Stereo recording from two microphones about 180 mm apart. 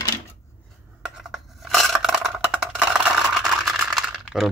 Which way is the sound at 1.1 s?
Centre (ahead or behind).